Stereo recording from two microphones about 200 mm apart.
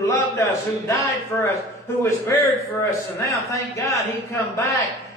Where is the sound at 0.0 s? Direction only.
15° left (ahead or behind).